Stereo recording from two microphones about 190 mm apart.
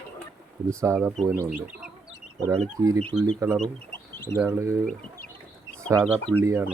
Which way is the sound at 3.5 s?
5° left (ahead or behind).